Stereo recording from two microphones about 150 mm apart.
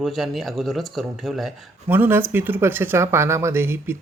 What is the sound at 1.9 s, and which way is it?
Speech, 15° right (ahead or behind).